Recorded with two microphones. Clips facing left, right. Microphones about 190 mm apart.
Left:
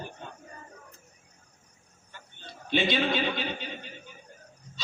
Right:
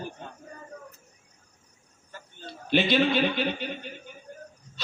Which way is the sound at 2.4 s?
60° right (ahead or behind).